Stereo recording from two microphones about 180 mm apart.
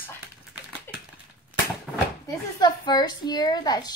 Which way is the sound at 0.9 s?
10° left (ahead or behind).